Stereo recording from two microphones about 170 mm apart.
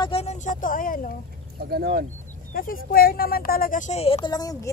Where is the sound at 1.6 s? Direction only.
70° right (ahead or behind).